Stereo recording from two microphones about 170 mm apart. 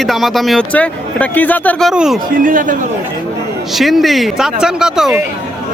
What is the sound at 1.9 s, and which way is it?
Speech, 5° right (ahead or behind).